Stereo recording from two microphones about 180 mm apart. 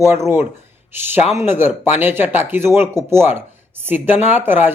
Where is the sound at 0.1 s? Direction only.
15° right (ahead or behind).